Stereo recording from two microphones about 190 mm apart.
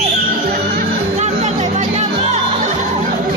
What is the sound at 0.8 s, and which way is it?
Music, 40° right (ahead or behind).